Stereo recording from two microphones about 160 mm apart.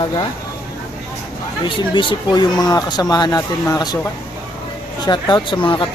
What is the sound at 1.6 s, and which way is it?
Speech, 30° left (ahead or behind).